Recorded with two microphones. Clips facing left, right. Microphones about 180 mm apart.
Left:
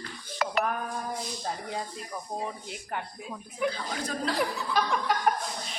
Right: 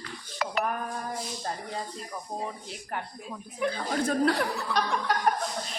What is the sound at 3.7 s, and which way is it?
Speech, 55° right (ahead or behind).